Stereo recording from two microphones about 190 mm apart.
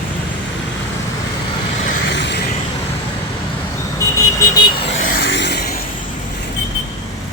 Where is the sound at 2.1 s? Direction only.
65° left (ahead or behind).